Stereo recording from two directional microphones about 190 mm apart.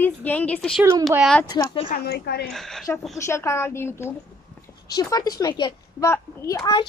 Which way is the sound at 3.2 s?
15° left (ahead or behind).